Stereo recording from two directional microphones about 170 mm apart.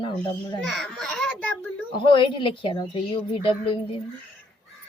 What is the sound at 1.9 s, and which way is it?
A woman's voice, 30° left (ahead or behind).